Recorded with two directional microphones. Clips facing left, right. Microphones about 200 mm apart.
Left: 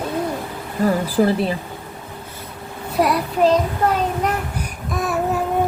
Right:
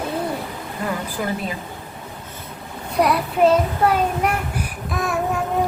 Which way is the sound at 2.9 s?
Centre (ahead or behind).